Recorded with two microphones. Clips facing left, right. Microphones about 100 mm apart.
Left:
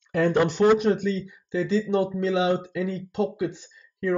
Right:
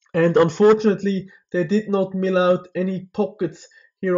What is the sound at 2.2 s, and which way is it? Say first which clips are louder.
Speech: right 5 dB; 50° right (ahead or behind).